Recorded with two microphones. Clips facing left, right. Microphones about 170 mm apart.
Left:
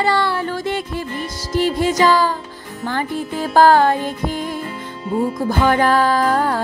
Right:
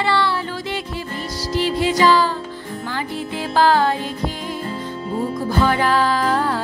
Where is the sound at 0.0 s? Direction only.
45° left (ahead or behind).